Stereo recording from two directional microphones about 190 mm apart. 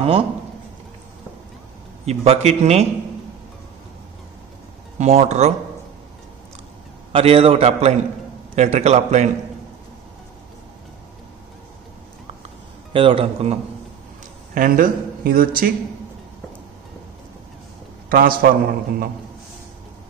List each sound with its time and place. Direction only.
0.0 s a man's voice: 30° right (ahead or behind)
2.0 s a man's voice: 35° right (ahead or behind)
4.9 s a man's voice: 35° right (ahead or behind)
7.1 s a man's voice: 30° right (ahead or behind)
12.9 s a man's voice: 30° right (ahead or behind)
14.5 s speech: 45° right (ahead or behind)
18.1 s a man's voice: 50° right (ahead or behind)